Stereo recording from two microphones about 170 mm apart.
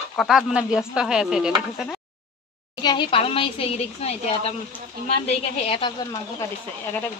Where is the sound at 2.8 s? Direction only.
25° left (ahead or behind).